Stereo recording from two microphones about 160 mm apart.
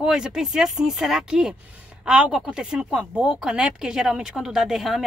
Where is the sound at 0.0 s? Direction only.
5° right (ahead or behind).